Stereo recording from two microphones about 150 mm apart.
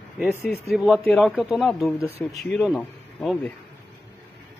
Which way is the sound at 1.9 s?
15° left (ahead or behind).